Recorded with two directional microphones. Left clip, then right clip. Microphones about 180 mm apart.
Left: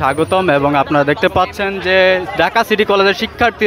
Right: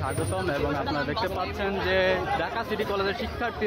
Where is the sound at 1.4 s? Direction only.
30° left (ahead or behind).